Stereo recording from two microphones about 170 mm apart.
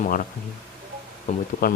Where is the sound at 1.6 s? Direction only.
60° left (ahead or behind).